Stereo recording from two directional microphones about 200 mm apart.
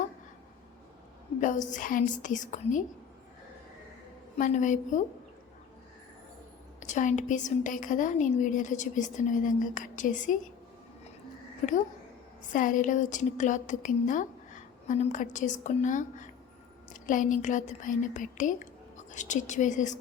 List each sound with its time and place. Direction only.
1.4 s a woman's voice: 40° left (ahead or behind)
4.4 s a woman's voice: 40° left (ahead or behind)
6.7 s a woman's voice: 35° left (ahead or behind)
12.5 s a woman's voice: 40° left (ahead or behind)